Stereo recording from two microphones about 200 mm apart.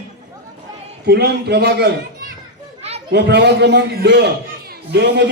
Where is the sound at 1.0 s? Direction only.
55° right (ahead or behind).